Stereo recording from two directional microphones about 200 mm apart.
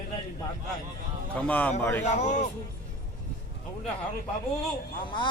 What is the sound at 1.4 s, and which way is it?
Speech, 5° left (ahead or behind).